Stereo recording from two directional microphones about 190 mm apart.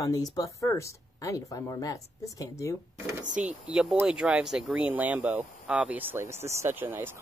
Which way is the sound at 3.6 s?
5° right (ahead or behind).